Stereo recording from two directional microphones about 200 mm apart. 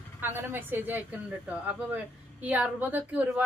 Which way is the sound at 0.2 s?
10° right (ahead or behind).